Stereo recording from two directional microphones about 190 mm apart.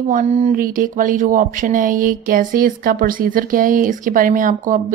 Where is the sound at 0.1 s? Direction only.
40° right (ahead or behind).